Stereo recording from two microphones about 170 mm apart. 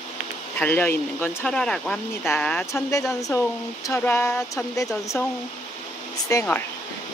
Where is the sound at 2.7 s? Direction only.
20° left (ahead or behind).